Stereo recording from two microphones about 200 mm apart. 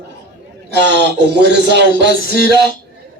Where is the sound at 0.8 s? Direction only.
60° right (ahead or behind).